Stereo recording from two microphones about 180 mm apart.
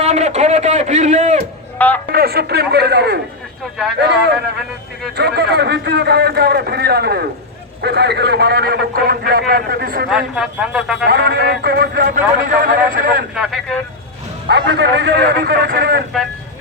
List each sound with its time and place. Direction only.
0.0 s a man's voice: 40° right (ahead or behind)
1.8 s a man's voice: 10° left (ahead or behind)
2.1 s a man's voice: 60° right (ahead or behind)
10.1 s speech: 5° right (ahead or behind)
11.0 s a man's voice: 65° right (ahead or behind)
13.3 s speech: centre (ahead or behind)
14.4 s a man's voice: 65° right (ahead or behind)